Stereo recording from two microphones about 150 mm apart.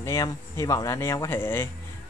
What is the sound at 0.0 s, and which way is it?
Speech, 20° left (ahead or behind).